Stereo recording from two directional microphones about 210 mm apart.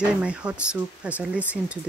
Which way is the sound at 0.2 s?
5° right (ahead or behind).